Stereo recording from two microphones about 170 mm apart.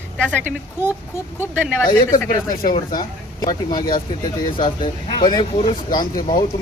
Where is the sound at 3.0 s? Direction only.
25° left (ahead or behind).